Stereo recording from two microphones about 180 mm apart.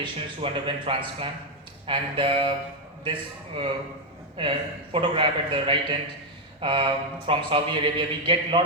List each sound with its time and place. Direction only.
0.0 s speech: 30° right (ahead or behind)